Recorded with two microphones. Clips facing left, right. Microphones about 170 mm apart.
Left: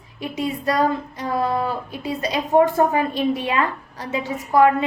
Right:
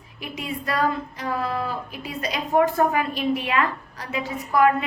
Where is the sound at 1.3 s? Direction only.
25° left (ahead or behind).